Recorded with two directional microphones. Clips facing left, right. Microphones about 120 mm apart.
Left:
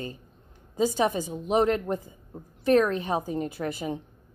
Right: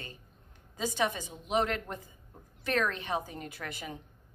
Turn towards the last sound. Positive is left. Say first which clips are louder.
# left 10 dB
turn(degrees=30)  # may be behind; listen again after turning